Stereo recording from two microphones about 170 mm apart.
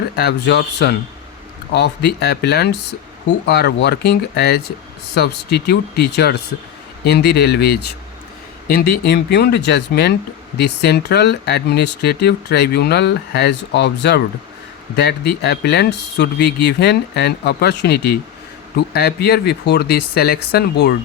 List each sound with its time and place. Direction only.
0.2 s speech: 75° left (ahead or behind)